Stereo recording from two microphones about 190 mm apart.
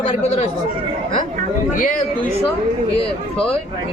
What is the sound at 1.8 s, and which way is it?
Speech, 45° left (ahead or behind).